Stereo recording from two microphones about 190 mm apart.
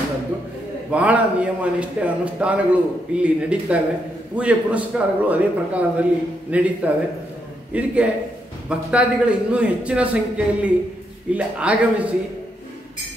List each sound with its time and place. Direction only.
0.9 s a man's voice: 5° right (ahead or behind)